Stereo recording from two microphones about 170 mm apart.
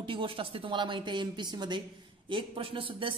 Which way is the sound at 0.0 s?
30° right (ahead or behind).